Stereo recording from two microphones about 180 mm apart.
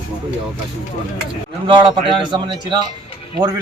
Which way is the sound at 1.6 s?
25° right (ahead or behind).